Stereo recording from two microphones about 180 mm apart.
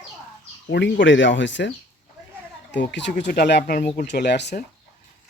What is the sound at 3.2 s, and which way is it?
Speech, 65° left (ahead or behind).